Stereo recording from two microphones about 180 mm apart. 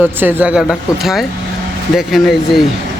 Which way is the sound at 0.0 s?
10° right (ahead or behind).